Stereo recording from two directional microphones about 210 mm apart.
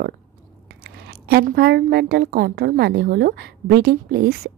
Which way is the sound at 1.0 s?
45° right (ahead or behind).